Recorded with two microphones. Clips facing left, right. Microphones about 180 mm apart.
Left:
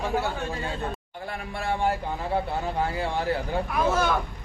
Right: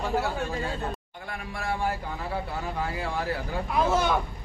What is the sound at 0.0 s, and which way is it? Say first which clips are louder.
Speech: left 1 dB; centre (ahead or behind).